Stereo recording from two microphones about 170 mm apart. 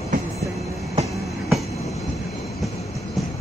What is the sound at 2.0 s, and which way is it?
Vehicle, centre (ahead or behind).